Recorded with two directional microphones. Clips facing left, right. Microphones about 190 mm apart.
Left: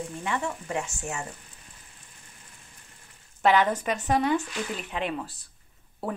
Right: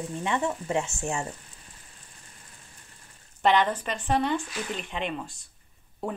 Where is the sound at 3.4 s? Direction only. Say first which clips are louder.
Left 1 dB; 5° left (ahead or behind).